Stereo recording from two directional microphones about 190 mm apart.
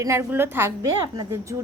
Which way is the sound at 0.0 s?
15° right (ahead or behind).